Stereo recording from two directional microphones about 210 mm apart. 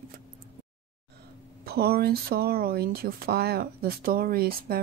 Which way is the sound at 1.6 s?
50° right (ahead or behind).